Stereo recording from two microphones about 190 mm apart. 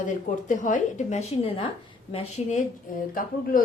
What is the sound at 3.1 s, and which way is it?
Speech, 45° left (ahead or behind).